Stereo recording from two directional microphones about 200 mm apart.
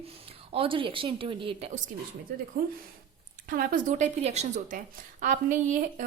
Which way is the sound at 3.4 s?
45° right (ahead or behind).